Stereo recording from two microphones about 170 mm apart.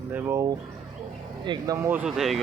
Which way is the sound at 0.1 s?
15° right (ahead or behind).